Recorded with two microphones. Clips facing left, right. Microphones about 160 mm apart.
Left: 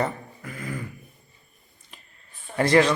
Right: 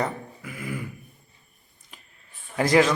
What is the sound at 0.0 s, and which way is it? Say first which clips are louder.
Beatboxing: left 1 dB; 5° right (ahead or behind).